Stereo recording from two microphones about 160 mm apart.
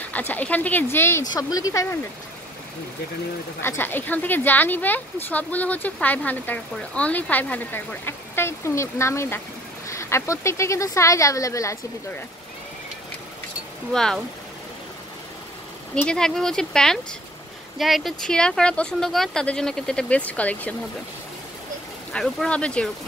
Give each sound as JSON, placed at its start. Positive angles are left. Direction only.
{"t": 0.1, "sound": "speech", "side_deg": 10}
{"t": 3.6, "sound": "speech", "side_deg": 15}
{"t": 13.9, "sound": "speech", "side_deg": 5}
{"t": 15.9, "sound": "speech", "side_deg": 5}
{"t": 22.1, "sound": "speech", "side_deg": 5}